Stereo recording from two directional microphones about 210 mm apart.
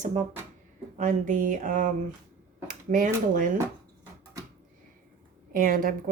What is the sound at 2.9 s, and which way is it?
Speech, 40° right (ahead or behind).